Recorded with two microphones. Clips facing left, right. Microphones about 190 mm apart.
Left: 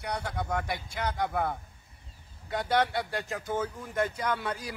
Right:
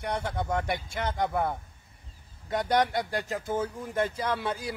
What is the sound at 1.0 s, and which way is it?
Speech, 25° right (ahead or behind).